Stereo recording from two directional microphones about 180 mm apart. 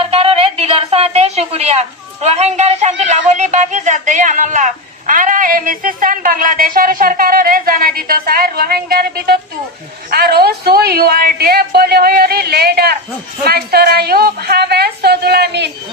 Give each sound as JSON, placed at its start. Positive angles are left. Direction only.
{"t": 0.1, "sound": "a woman's voice", "side_deg": -30}